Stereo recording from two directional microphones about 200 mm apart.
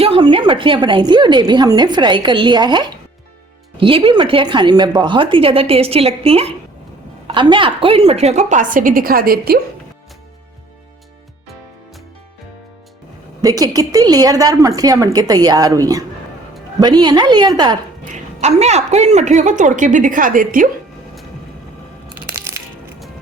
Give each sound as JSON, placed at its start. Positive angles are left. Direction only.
{"t": 0.0, "sound": "a woman's voice", "side_deg": -25}
{"t": 13.4, "sound": "a woman's voice", "side_deg": -20}
{"t": 18.1, "sound": "a woman's voice", "side_deg": -35}
{"t": 22.1, "sound": "music", "side_deg": -10}